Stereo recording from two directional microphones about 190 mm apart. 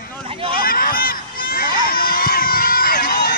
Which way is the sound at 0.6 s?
50° left (ahead or behind).